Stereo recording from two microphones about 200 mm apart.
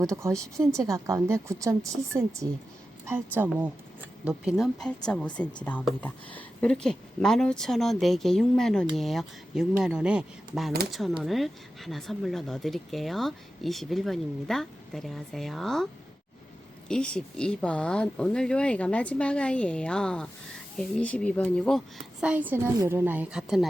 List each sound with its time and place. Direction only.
0.0 s a woman's voice: 15° right (ahead or behind); by 15.9 s centre (ahead or behind)
16.9 s speech: 5° left (ahead or behind)